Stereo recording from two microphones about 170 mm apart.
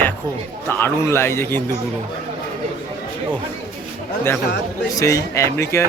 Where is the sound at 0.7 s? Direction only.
15° left (ahead or behind).